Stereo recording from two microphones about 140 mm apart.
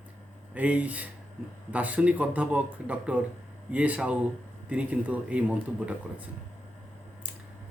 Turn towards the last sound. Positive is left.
turn(degrees=-10)  # may be behind; listen again after turning